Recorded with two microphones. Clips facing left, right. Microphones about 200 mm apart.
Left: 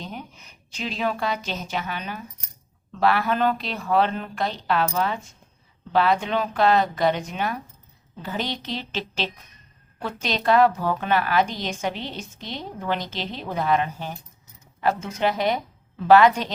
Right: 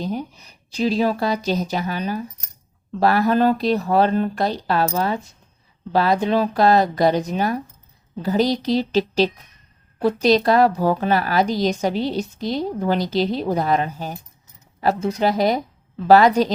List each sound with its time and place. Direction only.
0.0 s a woman's voice: 35° right (ahead or behind)